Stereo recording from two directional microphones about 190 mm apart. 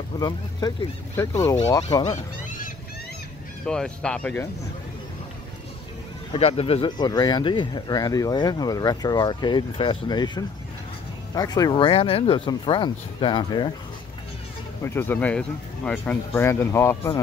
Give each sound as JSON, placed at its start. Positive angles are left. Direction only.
{"t": 0.2, "sound": "speech", "side_deg": 20}
{"t": 3.6, "sound": "speech", "side_deg": 5}
{"t": 6.3, "sound": "speech", "side_deg": 30}
{"t": 14.8, "sound": "speech", "side_deg": 10}